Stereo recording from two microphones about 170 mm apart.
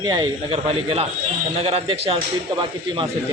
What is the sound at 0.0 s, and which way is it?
Speech, 25° right (ahead or behind).